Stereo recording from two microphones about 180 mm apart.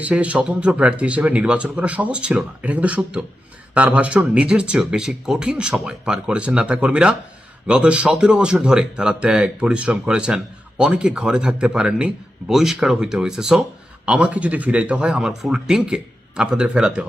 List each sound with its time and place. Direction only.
0.0 s speech: 5° right (ahead or behind)